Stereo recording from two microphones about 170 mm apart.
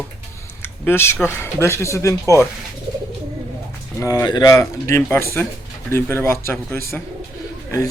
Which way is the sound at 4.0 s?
20° left (ahead or behind).